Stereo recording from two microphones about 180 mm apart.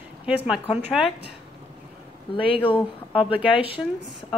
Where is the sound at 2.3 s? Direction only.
30° left (ahead or behind).